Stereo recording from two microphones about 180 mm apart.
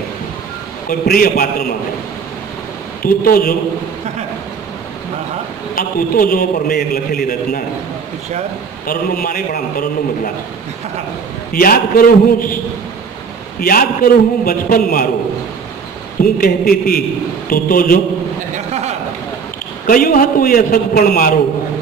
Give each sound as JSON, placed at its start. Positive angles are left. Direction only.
{"t": 0.8, "sound": "a man's voice", "side_deg": 50}
{"t": 3.0, "sound": "a man's voice", "side_deg": 55}
{"t": 5.8, "sound": "a man's voice", "side_deg": 50}
{"t": 8.8, "sound": "a man's voice", "side_deg": 55}
{"t": 11.5, "sound": "a man's voice", "side_deg": 50}
{"t": 13.6, "sound": "a man's voice", "side_deg": 55}
{"t": 16.2, "sound": "a man's voice", "side_deg": 55}
{"t": 18.7, "sound": "a sound", "side_deg": -40}
{"t": 19.9, "sound": "a man's voice", "side_deg": 50}